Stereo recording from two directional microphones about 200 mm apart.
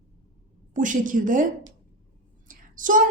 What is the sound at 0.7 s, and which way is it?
Speech, 40° right (ahead or behind).